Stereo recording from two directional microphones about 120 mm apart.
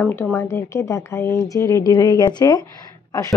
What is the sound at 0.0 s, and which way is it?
A woman's voice, 15° left (ahead or behind).